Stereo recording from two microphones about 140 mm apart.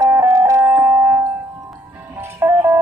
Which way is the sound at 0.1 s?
15° right (ahead or behind).